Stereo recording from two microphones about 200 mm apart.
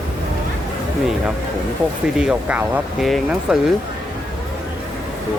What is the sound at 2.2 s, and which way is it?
Speech, 5° right (ahead or behind).